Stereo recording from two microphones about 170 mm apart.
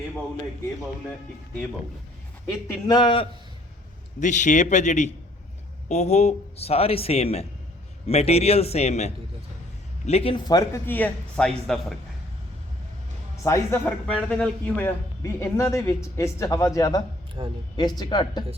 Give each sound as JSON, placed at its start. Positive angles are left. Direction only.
{"t": 2.6, "sound": "speech", "side_deg": 25}
{"t": 4.2, "sound": "a man's voice", "side_deg": 45}
{"t": 10.3, "sound": "speech", "side_deg": 20}
{"t": 13.3, "sound": "speech", "side_deg": 15}
{"t": 15.2, "sound": "speech", "side_deg": 15}
{"t": 17.4, "sound": "speech", "side_deg": -30}
{"t": 17.7, "sound": "speech", "side_deg": 25}